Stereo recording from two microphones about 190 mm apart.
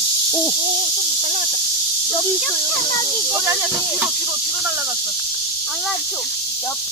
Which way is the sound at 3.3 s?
15° right (ahead or behind).